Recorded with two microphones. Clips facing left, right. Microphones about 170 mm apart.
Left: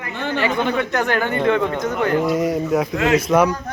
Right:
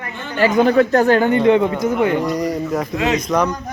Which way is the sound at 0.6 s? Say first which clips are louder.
Right 7 dB; 35° right (ahead or behind).